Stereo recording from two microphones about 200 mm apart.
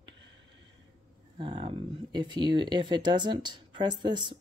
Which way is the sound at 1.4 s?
25° right (ahead or behind).